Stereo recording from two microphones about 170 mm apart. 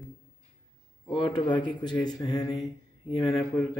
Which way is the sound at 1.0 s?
25° left (ahead or behind).